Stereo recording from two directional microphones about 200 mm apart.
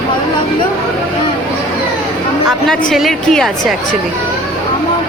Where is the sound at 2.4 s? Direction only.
Centre (ahead or behind).